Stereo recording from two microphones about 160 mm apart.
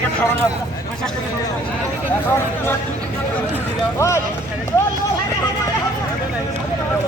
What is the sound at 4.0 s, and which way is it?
Speech, 15° left (ahead or behind).